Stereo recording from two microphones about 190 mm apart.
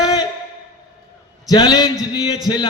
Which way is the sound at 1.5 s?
20° left (ahead or behind).